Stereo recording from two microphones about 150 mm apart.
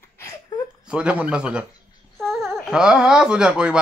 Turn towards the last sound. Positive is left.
turn(degrees=-5)  # may be behind; listen again after turning